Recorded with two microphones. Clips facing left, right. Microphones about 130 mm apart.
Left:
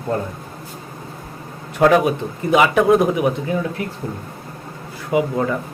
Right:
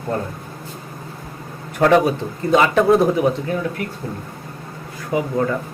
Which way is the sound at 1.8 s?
5° left (ahead or behind).